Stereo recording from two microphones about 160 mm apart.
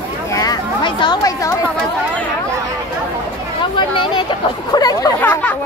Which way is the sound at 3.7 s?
30° left (ahead or behind).